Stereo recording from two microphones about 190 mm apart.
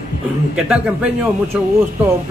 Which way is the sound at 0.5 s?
5° right (ahead or behind).